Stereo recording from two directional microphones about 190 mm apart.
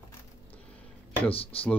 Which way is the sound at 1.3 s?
30° left (ahead or behind).